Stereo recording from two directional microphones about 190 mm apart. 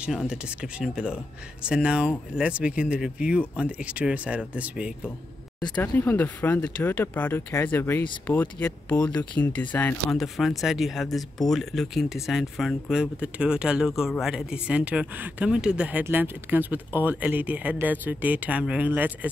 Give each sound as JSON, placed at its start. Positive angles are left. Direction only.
{"t": 0.0, "sound": "speech", "side_deg": -5}
{"t": 5.8, "sound": "speech", "side_deg": 10}